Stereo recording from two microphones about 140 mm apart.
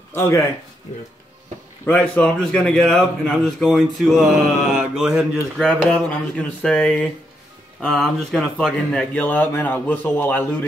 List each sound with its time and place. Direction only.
0.1 s speech: 20° left (ahead or behind)
1.9 s a man's voice: 10° left (ahead or behind)
5.7 s speech: 10° left (ahead or behind)